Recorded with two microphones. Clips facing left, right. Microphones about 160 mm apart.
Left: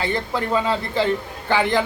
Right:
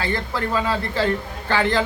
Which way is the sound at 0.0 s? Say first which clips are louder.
Left 1 dB; 20° left (ahead or behind).